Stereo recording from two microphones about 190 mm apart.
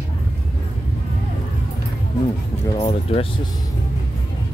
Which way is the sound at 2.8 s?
30° left (ahead or behind).